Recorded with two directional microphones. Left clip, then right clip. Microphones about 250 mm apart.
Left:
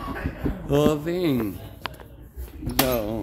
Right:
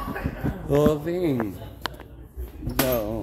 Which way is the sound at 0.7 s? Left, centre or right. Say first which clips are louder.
Even; centre.